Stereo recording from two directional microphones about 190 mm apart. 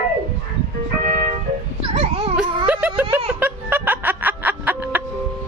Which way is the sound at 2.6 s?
5° right (ahead or behind).